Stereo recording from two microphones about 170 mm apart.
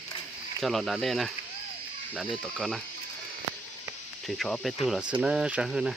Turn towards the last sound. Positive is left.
turn(degrees=0)  # may be behind; listen again after turning